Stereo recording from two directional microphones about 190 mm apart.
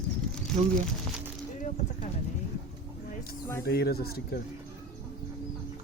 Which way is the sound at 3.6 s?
55° left (ahead or behind).